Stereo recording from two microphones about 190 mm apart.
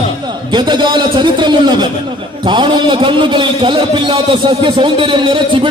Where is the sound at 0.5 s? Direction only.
25° right (ahead or behind).